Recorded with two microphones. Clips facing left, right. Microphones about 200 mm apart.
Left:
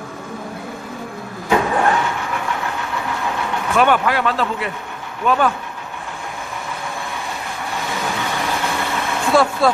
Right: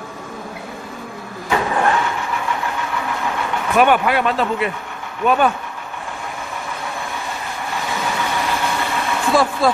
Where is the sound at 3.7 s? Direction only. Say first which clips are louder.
Right 1 dB; 15° right (ahead or behind).